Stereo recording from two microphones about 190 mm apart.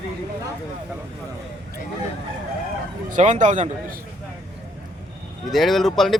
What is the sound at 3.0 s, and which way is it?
Speech, 40° right (ahead or behind).